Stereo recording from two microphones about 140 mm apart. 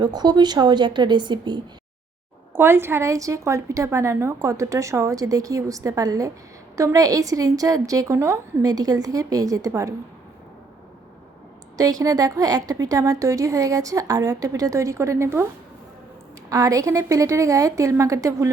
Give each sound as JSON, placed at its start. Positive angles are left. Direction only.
{"t": 0.0, "sound": "speech", "side_deg": -30}
{"t": 2.5, "sound": "a woman's voice", "side_deg": -15}
{"t": 11.8, "sound": "a woman's voice", "side_deg": -25}
{"t": 16.5, "sound": "a woman's voice", "side_deg": -25}